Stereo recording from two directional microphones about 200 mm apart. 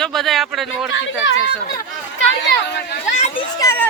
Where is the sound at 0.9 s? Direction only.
70° left (ahead or behind).